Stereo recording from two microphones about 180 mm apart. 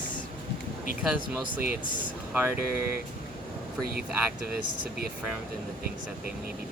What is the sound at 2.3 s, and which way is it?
Speech, 15° right (ahead or behind).